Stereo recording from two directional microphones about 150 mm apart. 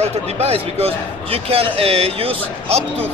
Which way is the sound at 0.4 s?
40° right (ahead or behind).